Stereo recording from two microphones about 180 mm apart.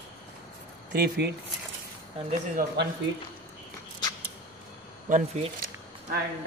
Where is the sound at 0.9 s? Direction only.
65° right (ahead or behind).